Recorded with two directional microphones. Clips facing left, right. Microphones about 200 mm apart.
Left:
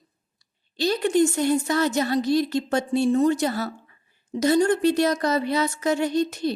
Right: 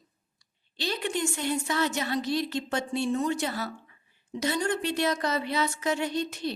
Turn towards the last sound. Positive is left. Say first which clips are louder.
# left 7 dB
turn(degrees=40)  # may be behind; listen again after turning